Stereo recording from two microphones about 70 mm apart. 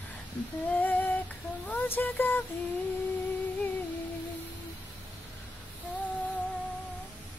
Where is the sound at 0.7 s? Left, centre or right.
Left.